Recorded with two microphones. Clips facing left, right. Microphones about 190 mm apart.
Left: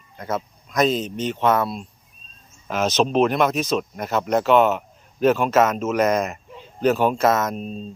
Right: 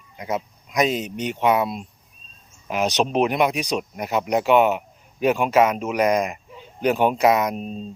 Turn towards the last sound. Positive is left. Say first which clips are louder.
# right 1 dB
turn(degrees=-10)  # may be behind; listen again after turning